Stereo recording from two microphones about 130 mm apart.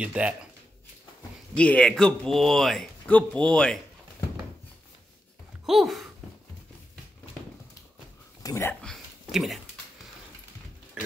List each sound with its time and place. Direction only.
0.0 s speech: 10° right (ahead or behind)
1.5 s speech: 10° left (ahead or behind)
5.7 s speech: centre (ahead or behind)
8.4 s speech: 25° left (ahead or behind)
8.8 s a sound: centre (ahead or behind)